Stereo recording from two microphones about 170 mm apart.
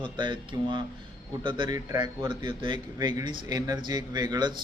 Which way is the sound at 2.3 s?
30° right (ahead or behind).